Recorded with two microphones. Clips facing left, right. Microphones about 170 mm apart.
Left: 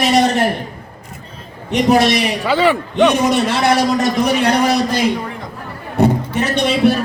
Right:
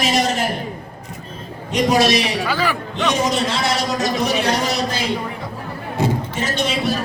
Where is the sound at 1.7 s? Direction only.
60° left (ahead or behind).